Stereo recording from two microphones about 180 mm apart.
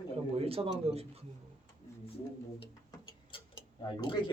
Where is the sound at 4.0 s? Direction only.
25° left (ahead or behind).